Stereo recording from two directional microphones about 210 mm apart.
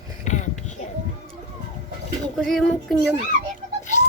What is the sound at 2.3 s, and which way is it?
Speech, centre (ahead or behind).